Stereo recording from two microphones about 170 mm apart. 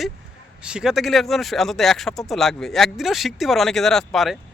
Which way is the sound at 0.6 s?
5° right (ahead or behind).